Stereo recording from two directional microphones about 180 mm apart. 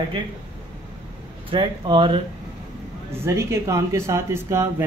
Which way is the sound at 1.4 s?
30° right (ahead or behind).